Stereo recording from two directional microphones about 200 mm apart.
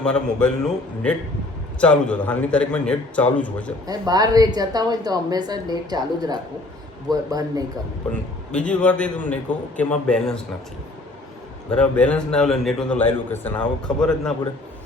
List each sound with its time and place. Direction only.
0.0 s a man's voice: 5° left (ahead or behind)
3.8 s a woman's voice: 20° right (ahead or behind)
8.5 s a man's voice: 5° left (ahead or behind)
11.7 s a man's voice: 5° left (ahead or behind)